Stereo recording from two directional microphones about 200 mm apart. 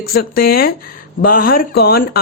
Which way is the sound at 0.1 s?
50° left (ahead or behind).